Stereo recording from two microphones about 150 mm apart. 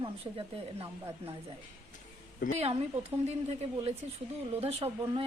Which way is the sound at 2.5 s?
40° right (ahead or behind).